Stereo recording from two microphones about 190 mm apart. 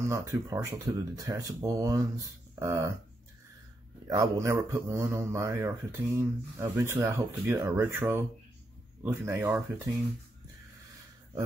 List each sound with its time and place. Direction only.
0.0 s speech: 15° right (ahead or behind)
4.1 s speech: 15° right (ahead or behind)